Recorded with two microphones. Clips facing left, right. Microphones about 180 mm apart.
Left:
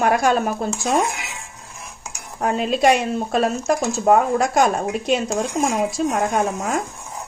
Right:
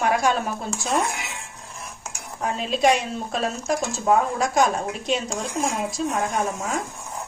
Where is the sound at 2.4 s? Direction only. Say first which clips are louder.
Left 4 dB; 55° left (ahead or behind).